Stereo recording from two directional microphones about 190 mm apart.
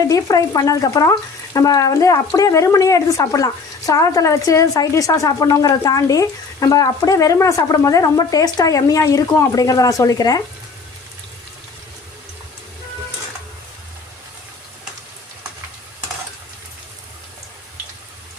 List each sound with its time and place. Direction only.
0.0 s speech: 20° left (ahead or behind)